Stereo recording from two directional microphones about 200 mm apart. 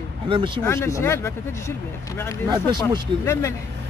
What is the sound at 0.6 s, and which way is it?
Speech, 15° left (ahead or behind).